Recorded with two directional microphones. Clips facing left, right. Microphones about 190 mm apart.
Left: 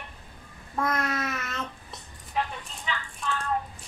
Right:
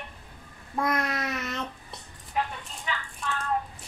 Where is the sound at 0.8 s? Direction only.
15° right (ahead or behind).